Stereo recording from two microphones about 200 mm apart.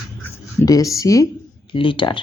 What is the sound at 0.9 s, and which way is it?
A woman's voice, 15° left (ahead or behind).